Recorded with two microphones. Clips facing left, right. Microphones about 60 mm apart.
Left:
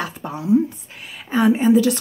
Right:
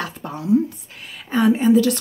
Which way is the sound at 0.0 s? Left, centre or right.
Centre.